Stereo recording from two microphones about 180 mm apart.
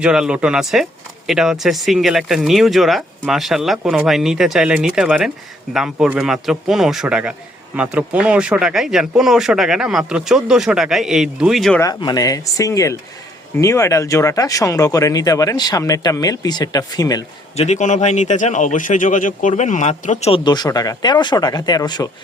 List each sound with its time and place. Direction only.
0.0 s speech: 5° right (ahead or behind)
11.8 s speech: 20° left (ahead or behind)
17.6 s speech: 40° left (ahead or behind)
20.4 s speech: 25° left (ahead or behind)